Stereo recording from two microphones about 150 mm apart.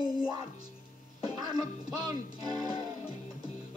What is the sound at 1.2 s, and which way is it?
Speech, 25° right (ahead or behind).